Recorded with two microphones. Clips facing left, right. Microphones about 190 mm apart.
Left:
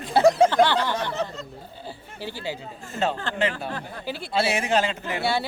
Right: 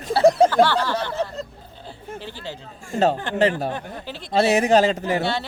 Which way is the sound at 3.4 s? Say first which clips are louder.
Right 8 dB; 40° right (ahead or behind).